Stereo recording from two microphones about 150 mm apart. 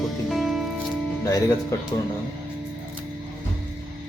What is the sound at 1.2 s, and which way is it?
Speech, 20° left (ahead or behind).